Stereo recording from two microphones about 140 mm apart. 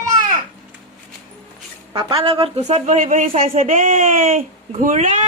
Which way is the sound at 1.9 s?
40° right (ahead or behind).